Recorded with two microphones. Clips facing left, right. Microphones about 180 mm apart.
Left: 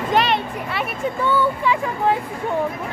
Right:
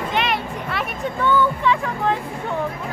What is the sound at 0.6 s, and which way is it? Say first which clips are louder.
Speech: left 1 dB; 5° left (ahead or behind).